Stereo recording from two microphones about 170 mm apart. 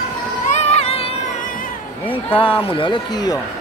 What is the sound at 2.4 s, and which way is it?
Speech, 30° left (ahead or behind).